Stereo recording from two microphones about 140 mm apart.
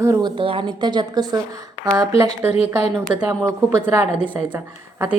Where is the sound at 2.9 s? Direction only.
25° right (ahead or behind).